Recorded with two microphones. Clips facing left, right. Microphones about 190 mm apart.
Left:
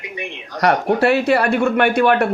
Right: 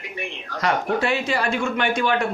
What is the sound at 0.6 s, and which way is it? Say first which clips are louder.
A man's voice: left 6 dB; 65° left (ahead or behind).